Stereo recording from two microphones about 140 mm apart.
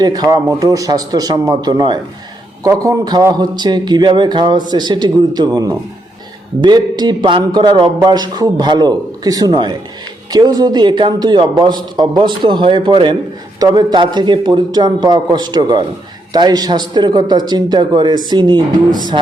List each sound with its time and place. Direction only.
0.0 s a man's voice: 30° right (ahead or behind)